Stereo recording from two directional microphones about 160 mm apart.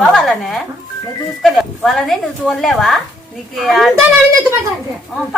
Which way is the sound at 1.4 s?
Centre (ahead or behind).